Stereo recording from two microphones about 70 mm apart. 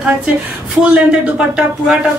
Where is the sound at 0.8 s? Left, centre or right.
Centre.